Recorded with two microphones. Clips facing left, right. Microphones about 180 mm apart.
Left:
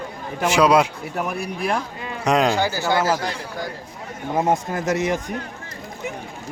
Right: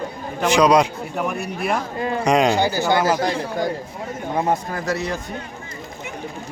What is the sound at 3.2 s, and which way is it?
Speech, 40° right (ahead or behind).